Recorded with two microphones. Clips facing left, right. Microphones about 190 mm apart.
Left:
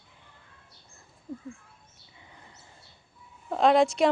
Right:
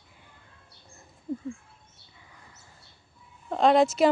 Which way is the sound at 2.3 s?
25° left (ahead or behind).